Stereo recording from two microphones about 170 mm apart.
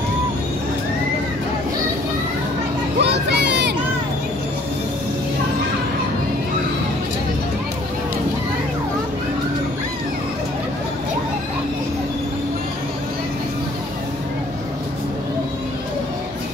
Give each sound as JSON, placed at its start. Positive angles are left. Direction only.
{"t": 3.0, "sound": "children playing", "side_deg": -85}